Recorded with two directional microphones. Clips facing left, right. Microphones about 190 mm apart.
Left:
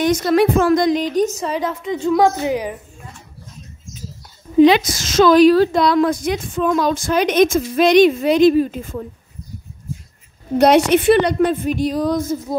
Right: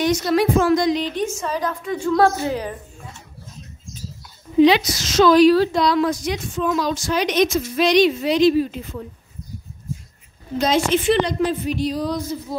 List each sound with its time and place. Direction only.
0.0 s a woman's voice: 50° left (ahead or behind); by 2.8 s 15° left (ahead or behind)
4.6 s a woman's voice: 50° left (ahead or behind)
10.6 s a woman's voice: 65° left (ahead or behind); by 12.5 s 45° left (ahead or behind)